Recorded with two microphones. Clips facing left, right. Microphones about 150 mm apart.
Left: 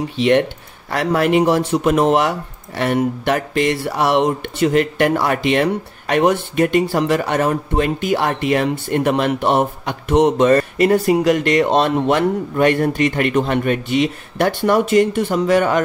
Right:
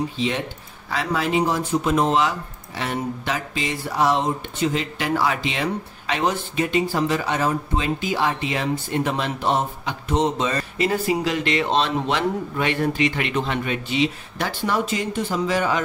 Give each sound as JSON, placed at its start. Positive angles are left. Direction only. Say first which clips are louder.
{"t": 0.2, "sound": "speech", "louder": "left 10 dB", "side_deg": 70}